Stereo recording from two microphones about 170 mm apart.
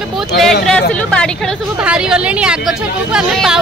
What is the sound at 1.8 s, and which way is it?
Speech, 5° right (ahead or behind).